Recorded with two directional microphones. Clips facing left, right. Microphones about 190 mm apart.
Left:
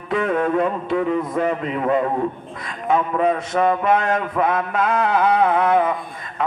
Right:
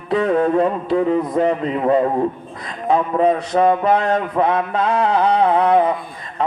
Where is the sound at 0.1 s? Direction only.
35° right (ahead or behind).